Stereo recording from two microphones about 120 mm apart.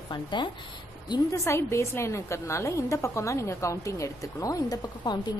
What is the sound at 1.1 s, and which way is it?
A woman's voice, 25° left (ahead or behind).